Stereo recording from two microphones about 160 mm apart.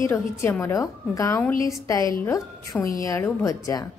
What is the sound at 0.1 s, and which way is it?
A woman's voice, 15° left (ahead or behind).